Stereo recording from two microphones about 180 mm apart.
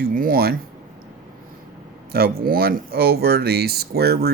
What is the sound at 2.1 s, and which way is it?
Speech, 60° right (ahead or behind).